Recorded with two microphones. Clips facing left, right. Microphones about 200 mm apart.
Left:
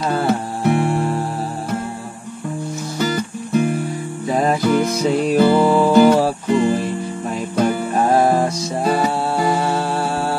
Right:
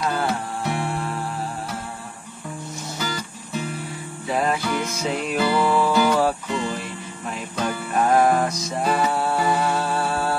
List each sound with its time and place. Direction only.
0.7 s music: 50° left (ahead or behind)
3.0 s music: 55° left (ahead or behind)
4.3 s music: 40° left (ahead or behind)
7.9 s music: 35° left (ahead or behind)